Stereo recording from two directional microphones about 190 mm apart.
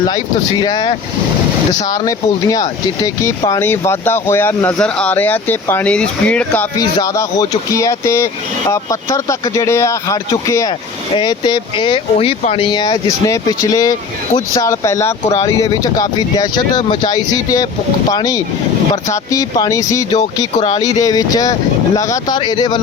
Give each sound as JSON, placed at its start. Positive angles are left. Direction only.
{"t": 0.6, "sound": "speech", "side_deg": 20}